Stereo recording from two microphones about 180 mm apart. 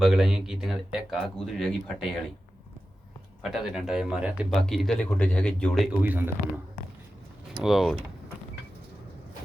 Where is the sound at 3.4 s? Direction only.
5° right (ahead or behind).